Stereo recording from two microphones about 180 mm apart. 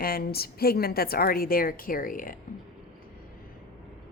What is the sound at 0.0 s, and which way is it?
A woman's voice, 55° left (ahead or behind).